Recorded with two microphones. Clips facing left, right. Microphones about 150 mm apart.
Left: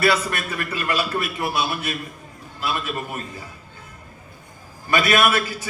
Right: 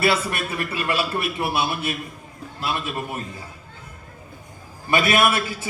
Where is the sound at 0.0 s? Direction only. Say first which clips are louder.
Left 1 dB; 25° right (ahead or behind).